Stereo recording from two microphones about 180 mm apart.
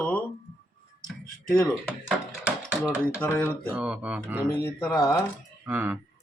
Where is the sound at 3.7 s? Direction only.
5° right (ahead or behind).